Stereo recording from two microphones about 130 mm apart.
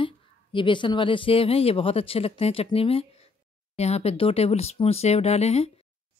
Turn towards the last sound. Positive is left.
turn(degrees=50)  # may be behind; listen again after turning